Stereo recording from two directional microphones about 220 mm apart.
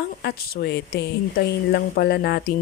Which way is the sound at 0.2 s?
45° left (ahead or behind).